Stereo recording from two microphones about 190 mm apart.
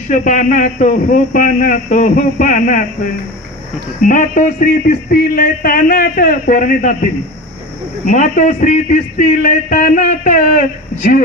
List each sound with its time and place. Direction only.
0.1 s speech: 45° left (ahead or behind)
4.0 s speech: 45° left (ahead or behind)
8.1 s a man's voice: 40° left (ahead or behind)